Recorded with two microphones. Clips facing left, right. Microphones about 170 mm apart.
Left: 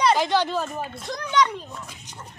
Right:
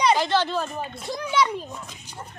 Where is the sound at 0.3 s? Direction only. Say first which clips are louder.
Even; 10° left (ahead or behind).